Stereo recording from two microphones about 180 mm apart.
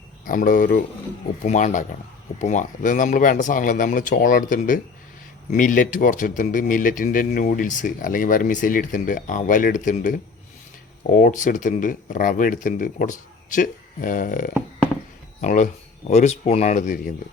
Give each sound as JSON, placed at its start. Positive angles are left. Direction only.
{"t": 0.3, "sound": "speech", "side_deg": 50}